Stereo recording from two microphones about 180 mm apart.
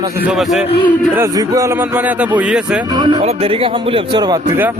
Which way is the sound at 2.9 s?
25° right (ahead or behind).